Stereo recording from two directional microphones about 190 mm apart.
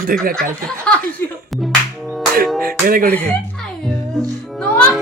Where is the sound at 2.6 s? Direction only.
50° right (ahead or behind).